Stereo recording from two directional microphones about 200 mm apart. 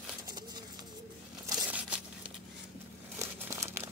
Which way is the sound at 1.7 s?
5° right (ahead or behind).